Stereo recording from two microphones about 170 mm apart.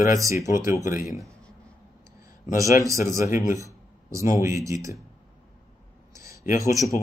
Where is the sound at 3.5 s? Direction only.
20° right (ahead or behind).